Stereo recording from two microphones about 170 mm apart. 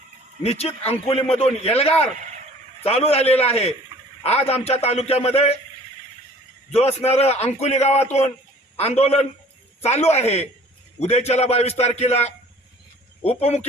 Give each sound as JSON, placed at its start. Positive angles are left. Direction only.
{"t": 0.4, "sound": "a man's voice", "side_deg": 35}
{"t": 6.7, "sound": "a man's voice", "side_deg": 40}
{"t": 13.4, "sound": "a man's voice", "side_deg": 40}